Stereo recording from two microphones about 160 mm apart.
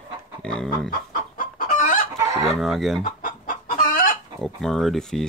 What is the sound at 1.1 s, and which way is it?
Chicken, 60° left (ahead or behind).